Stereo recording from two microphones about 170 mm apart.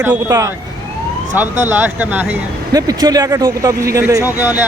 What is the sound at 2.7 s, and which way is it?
Speech, 20° right (ahead or behind).